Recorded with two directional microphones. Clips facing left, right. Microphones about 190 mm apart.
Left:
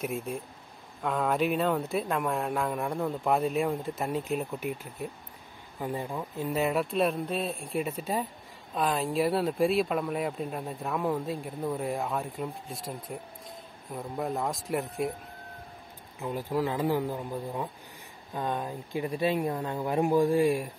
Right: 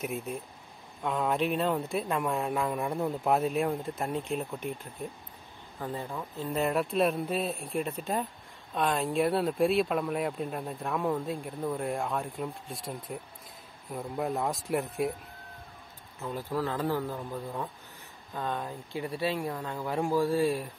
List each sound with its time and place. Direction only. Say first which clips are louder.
0.0 s speech: left 2 dB; centre (ahead or behind)
16.2 s speech: left 3 dB; 15° left (ahead or behind)